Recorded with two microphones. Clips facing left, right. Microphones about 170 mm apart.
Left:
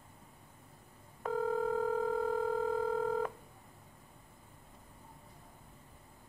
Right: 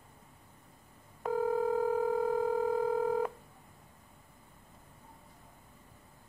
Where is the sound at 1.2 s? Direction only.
10° right (ahead or behind).